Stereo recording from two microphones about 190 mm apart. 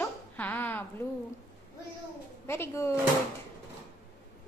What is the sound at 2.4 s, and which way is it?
Speech, 15° left (ahead or behind).